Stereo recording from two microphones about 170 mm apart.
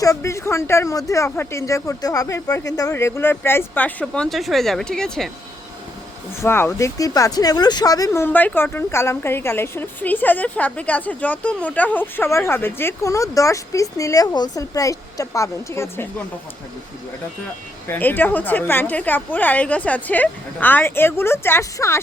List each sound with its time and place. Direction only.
0.0 s speech: 20° left (ahead or behind)
6.4 s speech: 15° left (ahead or behind)
17.8 s speech: 10° left (ahead or behind)